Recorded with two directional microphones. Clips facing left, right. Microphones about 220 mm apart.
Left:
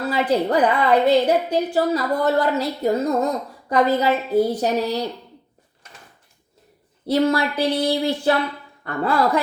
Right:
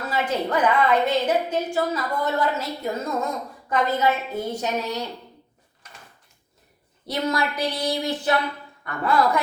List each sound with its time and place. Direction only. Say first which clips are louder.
0.0 s a woman's voice: left 5 dB; 35° left (ahead or behind)
7.1 s a woman's voice: left 6 dB; 30° left (ahead or behind)